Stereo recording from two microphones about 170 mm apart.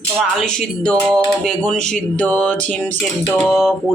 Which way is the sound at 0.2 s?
5° left (ahead or behind).